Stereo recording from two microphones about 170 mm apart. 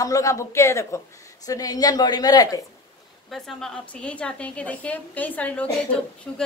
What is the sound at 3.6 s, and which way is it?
A woman's voice, 5° left (ahead or behind).